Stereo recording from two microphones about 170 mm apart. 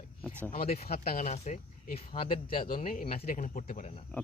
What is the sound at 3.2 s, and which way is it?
Speech, 50° left (ahead or behind).